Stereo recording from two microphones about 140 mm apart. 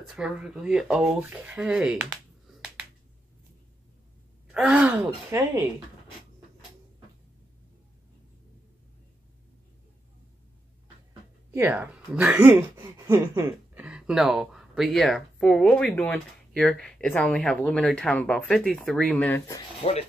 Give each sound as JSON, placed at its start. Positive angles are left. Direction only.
{"t": 0.1, "sound": "speech", "side_deg": -5}
{"t": 4.5, "sound": "speech", "side_deg": -5}
{"t": 11.5, "sound": "speech", "side_deg": -15}
{"t": 13.8, "sound": "speech", "side_deg": -5}
{"t": 19.2, "sound": "speech", "side_deg": 15}
{"t": 19.8, "sound": "speech", "side_deg": 50}